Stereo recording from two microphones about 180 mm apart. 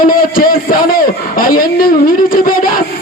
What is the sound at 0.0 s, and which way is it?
A man's voice, 50° left (ahead or behind).